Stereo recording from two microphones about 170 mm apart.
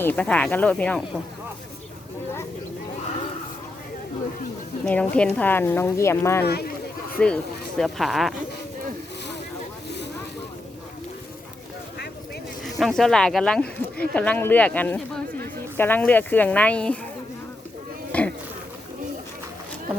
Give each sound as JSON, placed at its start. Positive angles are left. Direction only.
{"t": 0.0, "sound": "speech", "side_deg": 10}
{"t": 4.9, "sound": "speech", "side_deg": 5}
{"t": 6.4, "sound": "speech", "side_deg": 70}
{"t": 7.2, "sound": "speech", "side_deg": 5}
{"t": 12.8, "sound": "speech", "side_deg": 0}
{"t": 18.1, "sound": "insect", "side_deg": 10}